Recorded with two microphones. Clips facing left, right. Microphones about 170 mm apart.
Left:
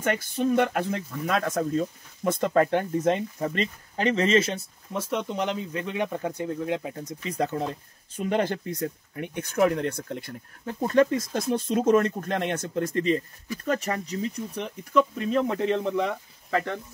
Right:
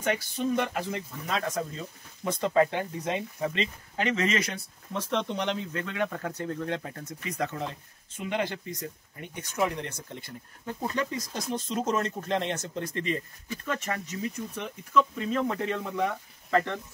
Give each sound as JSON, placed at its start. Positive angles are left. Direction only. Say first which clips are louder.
{"t": 0.0, "sound": "speech", "louder": "left 3 dB", "side_deg": 50}
{"t": 4.9, "sound": "speech", "louder": "left 1 dB", "side_deg": 10}
{"t": 7.2, "sound": "speech", "louder": "left 5 dB", "side_deg": 30}
{"t": 8.6, "sound": "speech", "louder": "left 7 dB", "side_deg": 60}
{"t": 13.0, "sound": "speech", "louder": "left 7 dB", "side_deg": 35}